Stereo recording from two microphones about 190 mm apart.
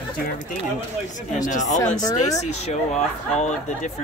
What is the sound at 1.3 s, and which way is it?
Speech, 40° left (ahead or behind).